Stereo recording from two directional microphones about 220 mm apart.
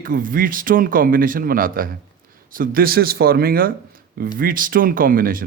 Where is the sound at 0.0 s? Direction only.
40° right (ahead or behind).